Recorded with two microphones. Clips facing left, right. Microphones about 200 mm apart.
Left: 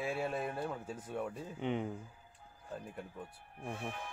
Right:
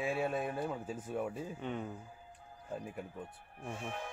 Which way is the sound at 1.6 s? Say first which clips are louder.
Left 6 dB; 20° left (ahead or behind).